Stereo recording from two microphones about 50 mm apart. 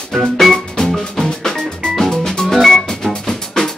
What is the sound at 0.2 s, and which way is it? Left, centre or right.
Music, centre.